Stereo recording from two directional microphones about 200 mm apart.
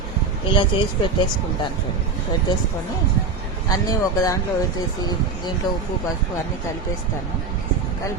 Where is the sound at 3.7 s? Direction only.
15° left (ahead or behind).